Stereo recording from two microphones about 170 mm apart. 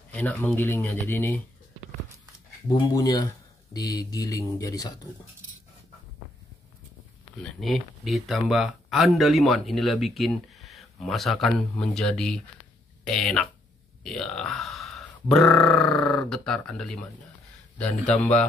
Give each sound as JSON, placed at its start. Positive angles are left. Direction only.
{"t": 0.1, "sound": "speech", "side_deg": 10}
{"t": 2.9, "sound": "speech", "side_deg": 20}
{"t": 7.6, "sound": "speech", "side_deg": 0}